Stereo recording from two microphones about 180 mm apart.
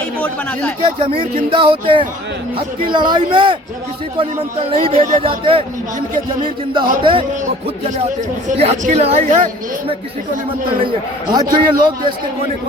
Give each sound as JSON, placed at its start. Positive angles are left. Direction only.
{"t": 0.8, "sound": "speech", "side_deg": -30}
{"t": 4.8, "sound": "speech", "side_deg": -30}
{"t": 7.0, "sound": "speech", "side_deg": -30}
{"t": 8.4, "sound": "speech", "side_deg": -40}
{"t": 11.3, "sound": "speech", "side_deg": -25}